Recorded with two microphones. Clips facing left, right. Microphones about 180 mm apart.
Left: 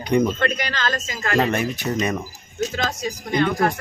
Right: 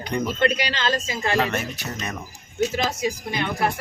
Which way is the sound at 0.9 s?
15° right (ahead or behind).